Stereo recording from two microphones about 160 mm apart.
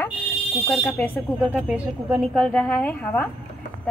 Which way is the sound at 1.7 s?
5° right (ahead or behind).